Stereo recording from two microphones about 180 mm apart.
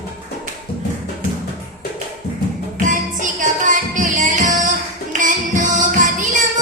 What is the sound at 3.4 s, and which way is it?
Music, 45° right (ahead or behind).